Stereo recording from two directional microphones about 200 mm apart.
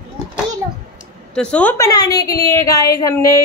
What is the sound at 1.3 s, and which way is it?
A woman's voice, 5° left (ahead or behind).